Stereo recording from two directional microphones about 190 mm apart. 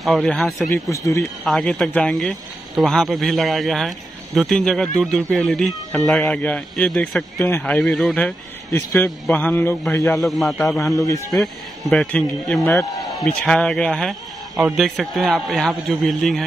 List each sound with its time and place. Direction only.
0.0 s speech: centre (ahead or behind)
0.9 s speech: 15° left (ahead or behind)
1.5 s speech: centre (ahead or behind)
10.1 s speech: centre (ahead or behind)